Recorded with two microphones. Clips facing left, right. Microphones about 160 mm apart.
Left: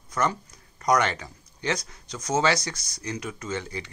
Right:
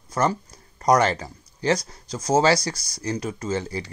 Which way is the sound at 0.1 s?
30° right (ahead or behind).